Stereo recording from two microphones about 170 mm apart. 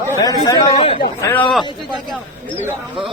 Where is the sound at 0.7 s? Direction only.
35° left (ahead or behind).